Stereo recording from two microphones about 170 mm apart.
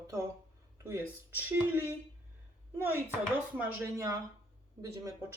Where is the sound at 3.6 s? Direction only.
15° right (ahead or behind).